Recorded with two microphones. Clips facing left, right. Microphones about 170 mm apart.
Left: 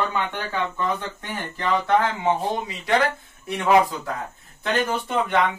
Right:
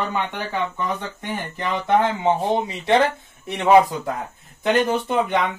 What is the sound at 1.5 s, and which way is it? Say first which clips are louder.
Speech: even; 20° right (ahead or behind).